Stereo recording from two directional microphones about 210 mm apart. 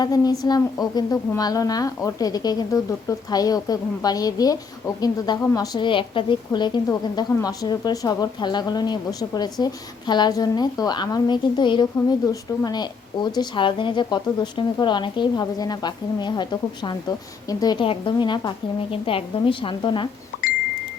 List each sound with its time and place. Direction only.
0.0 s a woman's voice: 15° left (ahead or behind)